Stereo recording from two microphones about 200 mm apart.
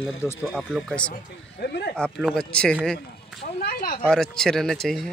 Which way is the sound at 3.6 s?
45° left (ahead or behind).